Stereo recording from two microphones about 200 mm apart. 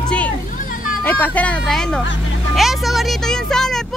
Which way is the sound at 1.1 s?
10° left (ahead or behind).